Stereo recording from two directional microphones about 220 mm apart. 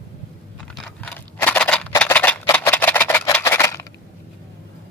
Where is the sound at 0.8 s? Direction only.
5° left (ahead or behind).